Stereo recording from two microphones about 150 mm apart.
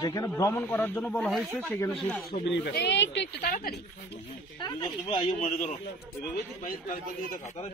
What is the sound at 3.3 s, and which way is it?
Speech, 80° left.